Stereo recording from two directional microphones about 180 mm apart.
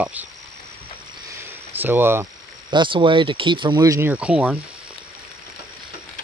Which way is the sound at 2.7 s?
25° right (ahead or behind).